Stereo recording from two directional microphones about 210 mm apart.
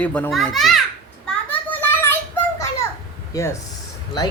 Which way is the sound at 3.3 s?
15° left (ahead or behind).